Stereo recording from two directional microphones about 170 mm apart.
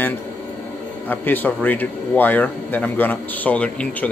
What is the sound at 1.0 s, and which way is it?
Speech, 10° left (ahead or behind).